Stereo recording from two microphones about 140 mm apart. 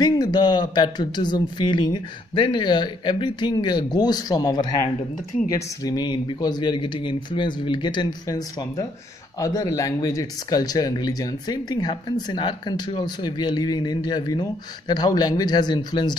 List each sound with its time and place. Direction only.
0.0 s speech: 30° left (ahead or behind)